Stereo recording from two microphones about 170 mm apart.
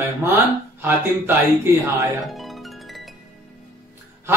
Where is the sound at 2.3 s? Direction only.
Centre (ahead or behind).